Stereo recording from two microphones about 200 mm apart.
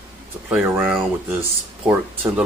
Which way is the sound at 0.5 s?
10° right (ahead or behind).